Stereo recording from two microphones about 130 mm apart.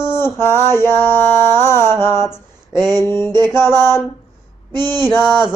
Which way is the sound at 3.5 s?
20° left (ahead or behind).